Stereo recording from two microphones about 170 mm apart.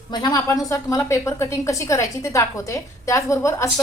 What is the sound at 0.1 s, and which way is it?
A woman's voice, 25° left (ahead or behind).